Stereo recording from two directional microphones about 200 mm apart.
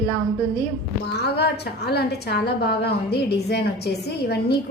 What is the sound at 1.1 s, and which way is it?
A woman's voice, 55° left (ahead or behind).